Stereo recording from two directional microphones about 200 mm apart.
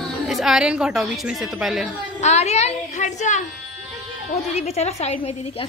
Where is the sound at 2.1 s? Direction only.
35° left (ahead or behind).